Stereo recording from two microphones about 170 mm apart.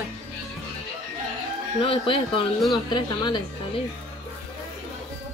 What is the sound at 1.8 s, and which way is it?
A woman's voice, 30° left (ahead or behind).